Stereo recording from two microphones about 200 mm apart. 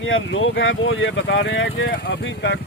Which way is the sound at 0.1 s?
75° left (ahead or behind).